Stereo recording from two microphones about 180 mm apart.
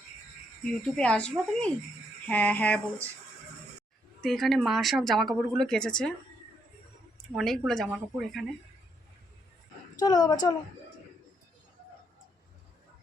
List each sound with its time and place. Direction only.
0.6 s speech: 5° left (ahead or behind)
2.2 s a sound: 10° left (ahead or behind)
4.2 s speech: centre (ahead or behind)
7.3 s speech: centre (ahead or behind)
10.0 s a woman's voice: 20° left (ahead or behind)